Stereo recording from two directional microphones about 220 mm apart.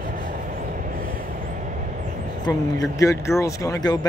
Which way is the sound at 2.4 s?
15° left (ahead or behind).